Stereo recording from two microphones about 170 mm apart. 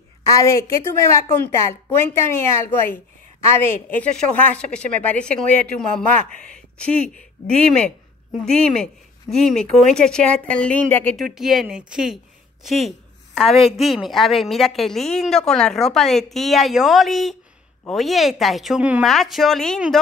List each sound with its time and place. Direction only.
0.3 s a woman's voice: 15° left (ahead or behind)
11.3 s a woman's voice: centre (ahead or behind)